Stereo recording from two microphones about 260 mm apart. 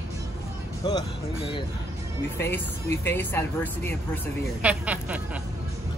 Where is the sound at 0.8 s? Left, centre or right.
Centre.